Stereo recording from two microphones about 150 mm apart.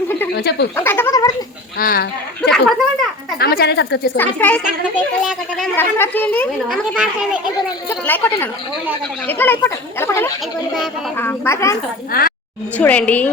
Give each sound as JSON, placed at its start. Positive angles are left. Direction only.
{"t": 0.3, "sound": "speech", "side_deg": 90}
{"t": 0.8, "sound": "a sound", "side_deg": 15}
{"t": 1.8, "sound": "speech", "side_deg": 75}
{"t": 2.5, "sound": "a child's voice", "side_deg": 0}
{"t": 3.3, "sound": "a woman's voice", "side_deg": 90}
{"t": 4.2, "sound": "speech", "side_deg": 10}
{"t": 5.7, "sound": "speech", "side_deg": 15}
{"t": 6.7, "sound": "a child's voice", "side_deg": -5}
{"t": 7.9, "sound": "a sound", "side_deg": 15}
{"t": 9.2, "sound": "speech", "side_deg": 15}
{"t": 12.1, "sound": "speech", "side_deg": 70}
{"t": 12.7, "sound": "speech", "side_deg": 10}